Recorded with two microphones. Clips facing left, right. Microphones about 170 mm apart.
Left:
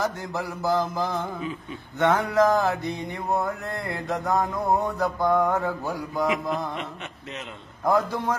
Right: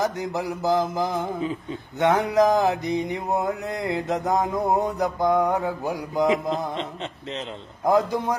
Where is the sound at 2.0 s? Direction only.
15° right (ahead or behind).